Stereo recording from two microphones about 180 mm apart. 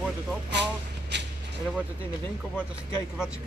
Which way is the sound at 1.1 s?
75° right (ahead or behind).